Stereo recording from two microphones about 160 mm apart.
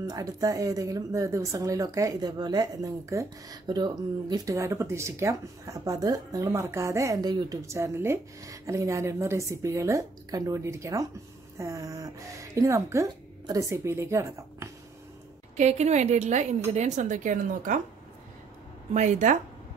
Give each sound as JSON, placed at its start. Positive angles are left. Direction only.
{"t": 0.0, "sound": "speech", "side_deg": -20}
{"t": 15.5, "sound": "a woman's voice", "side_deg": -45}
{"t": 18.9, "sound": "a woman's voice", "side_deg": -50}